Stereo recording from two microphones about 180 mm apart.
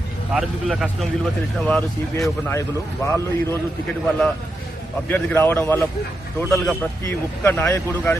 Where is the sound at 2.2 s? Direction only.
15° left (ahead or behind).